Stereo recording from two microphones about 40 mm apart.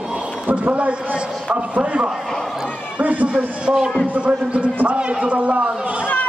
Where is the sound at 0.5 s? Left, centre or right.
Right.